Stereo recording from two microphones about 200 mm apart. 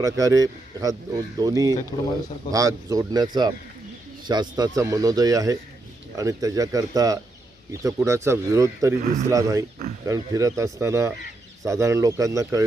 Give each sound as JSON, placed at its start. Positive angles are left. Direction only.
{"t": 0.0, "sound": "speech", "side_deg": -15}
{"t": 1.9, "sound": "speech", "side_deg": 25}
{"t": 2.5, "sound": "speech", "side_deg": -15}
{"t": 9.0, "sound": "speech", "side_deg": -35}
{"t": 9.3, "sound": "speech", "side_deg": -15}